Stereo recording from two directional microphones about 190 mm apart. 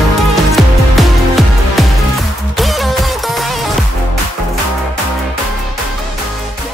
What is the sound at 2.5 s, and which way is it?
Music, centre (ahead or behind).